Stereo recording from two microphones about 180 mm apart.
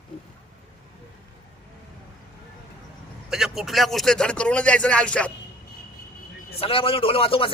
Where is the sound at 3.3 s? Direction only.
Centre (ahead or behind).